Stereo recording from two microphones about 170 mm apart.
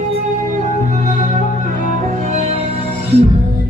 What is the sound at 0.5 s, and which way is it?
Music, 50° right (ahead or behind).